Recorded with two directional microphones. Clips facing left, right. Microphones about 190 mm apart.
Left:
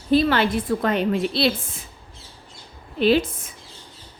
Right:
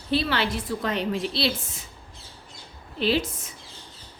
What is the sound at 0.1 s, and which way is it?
A woman's voice, 50° left (ahead or behind).